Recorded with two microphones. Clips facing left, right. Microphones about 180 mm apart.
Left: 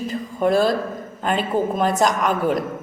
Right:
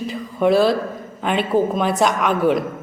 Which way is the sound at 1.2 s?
Centre (ahead or behind).